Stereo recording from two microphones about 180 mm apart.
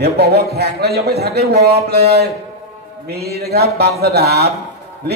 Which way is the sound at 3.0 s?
60° right (ahead or behind).